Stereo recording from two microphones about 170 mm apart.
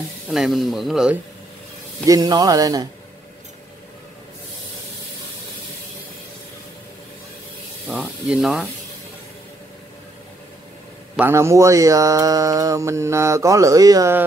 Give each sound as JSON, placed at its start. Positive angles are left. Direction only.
{"t": 0.3, "sound": "speech", "side_deg": 0}
{"t": 2.0, "sound": "speech", "side_deg": -20}
{"t": 8.3, "sound": "speech", "side_deg": -5}
{"t": 11.1, "sound": "speech", "side_deg": -15}